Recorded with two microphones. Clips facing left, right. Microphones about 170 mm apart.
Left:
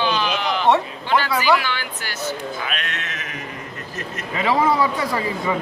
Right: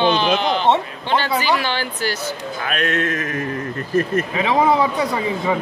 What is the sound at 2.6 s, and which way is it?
Speech, 45° right (ahead or behind).